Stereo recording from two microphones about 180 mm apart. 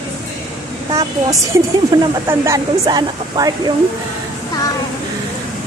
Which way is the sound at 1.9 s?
20° right (ahead or behind).